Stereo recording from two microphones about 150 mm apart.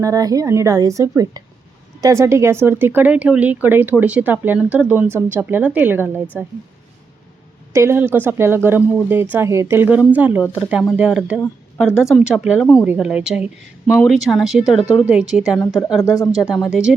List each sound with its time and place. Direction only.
0.0 s a woman's voice: 25° right (ahead or behind)
7.7 s a woman's voice: 20° right (ahead or behind)
16.0 s speech: 20° left (ahead or behind)
16.3 s a woman's voice: 5° right (ahead or behind)